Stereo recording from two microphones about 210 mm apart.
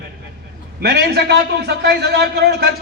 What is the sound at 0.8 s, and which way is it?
A man's voice, 50° right (ahead or behind).